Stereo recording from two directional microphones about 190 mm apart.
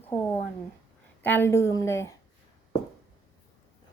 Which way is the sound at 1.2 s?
10° left (ahead or behind).